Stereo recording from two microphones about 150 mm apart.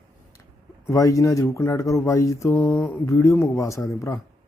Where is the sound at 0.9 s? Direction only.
20° left (ahead or behind).